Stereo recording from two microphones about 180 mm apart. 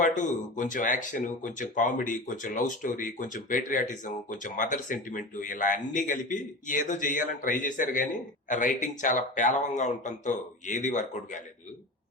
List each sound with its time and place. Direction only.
0.0 s speech: 45° left (ahead or behind)